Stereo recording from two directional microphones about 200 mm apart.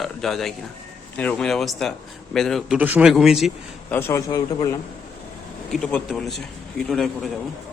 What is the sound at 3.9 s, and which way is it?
Speech, 15° left (ahead or behind).